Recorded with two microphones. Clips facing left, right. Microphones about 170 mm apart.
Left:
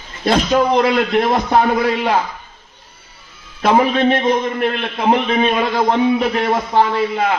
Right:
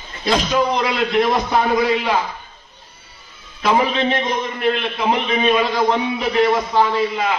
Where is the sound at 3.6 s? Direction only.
50° left (ahead or behind).